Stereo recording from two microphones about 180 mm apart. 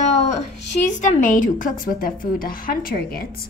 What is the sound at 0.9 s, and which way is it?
A woman's voice, 45° left (ahead or behind).